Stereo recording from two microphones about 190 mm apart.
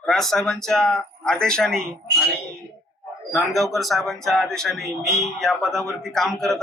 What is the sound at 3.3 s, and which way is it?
Speech, centre (ahead or behind).